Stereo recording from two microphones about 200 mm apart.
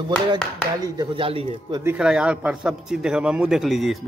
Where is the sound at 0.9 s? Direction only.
25° right (ahead or behind).